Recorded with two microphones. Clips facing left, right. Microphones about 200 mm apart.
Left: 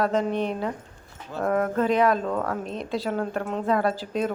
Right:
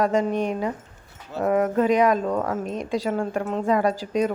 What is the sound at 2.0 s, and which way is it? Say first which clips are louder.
Speech: right 2 dB; 15° right (ahead or behind).